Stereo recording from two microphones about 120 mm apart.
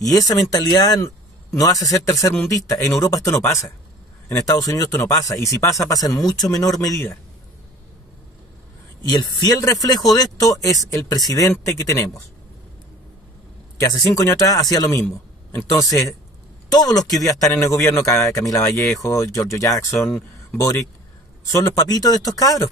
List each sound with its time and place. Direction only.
0.0 s speech: 30° left (ahead or behind)
9.0 s speech: 35° left (ahead or behind)
13.7 s speech: 30° left (ahead or behind)